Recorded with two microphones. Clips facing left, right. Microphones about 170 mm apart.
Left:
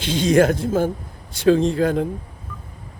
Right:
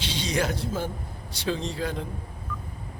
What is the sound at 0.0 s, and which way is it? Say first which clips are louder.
Speech: left 12 dB; 50° left (ahead or behind).